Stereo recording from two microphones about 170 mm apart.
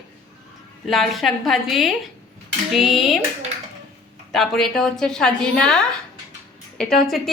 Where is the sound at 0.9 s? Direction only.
Centre (ahead or behind).